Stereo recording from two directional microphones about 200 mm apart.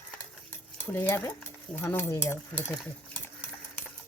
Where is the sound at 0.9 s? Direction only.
10° left (ahead or behind).